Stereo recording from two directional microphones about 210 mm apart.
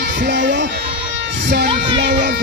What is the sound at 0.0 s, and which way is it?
Music, 60° right (ahead or behind).